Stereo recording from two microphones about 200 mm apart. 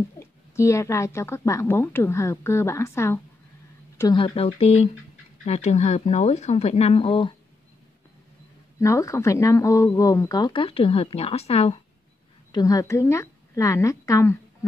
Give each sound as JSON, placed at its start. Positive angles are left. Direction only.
{"t": 0.2, "sound": "speech", "side_deg": 15}
{"t": 4.0, "sound": "speech", "side_deg": 25}
{"t": 8.7, "sound": "speech", "side_deg": 15}
{"t": 12.5, "sound": "a woman's voice", "side_deg": 15}